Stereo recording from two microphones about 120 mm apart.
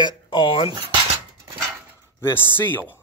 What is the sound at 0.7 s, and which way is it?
Cutlery, 45° right (ahead or behind).